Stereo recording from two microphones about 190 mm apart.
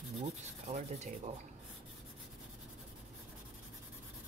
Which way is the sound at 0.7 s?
35° right (ahead or behind).